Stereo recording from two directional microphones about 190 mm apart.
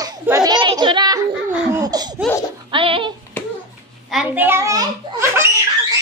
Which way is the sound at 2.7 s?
25° right (ahead or behind).